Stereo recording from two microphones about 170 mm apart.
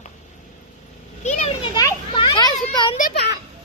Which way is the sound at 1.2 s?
45° left (ahead or behind).